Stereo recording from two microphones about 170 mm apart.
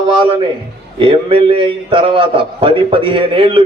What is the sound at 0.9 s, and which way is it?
A man's voice, 30° right (ahead or behind).